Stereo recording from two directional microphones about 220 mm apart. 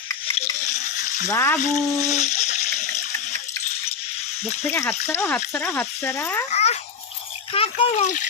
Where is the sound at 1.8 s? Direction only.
15° right (ahead or behind).